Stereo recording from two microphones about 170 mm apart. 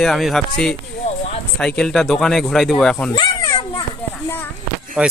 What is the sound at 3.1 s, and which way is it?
Children playing, 25° left (ahead or behind).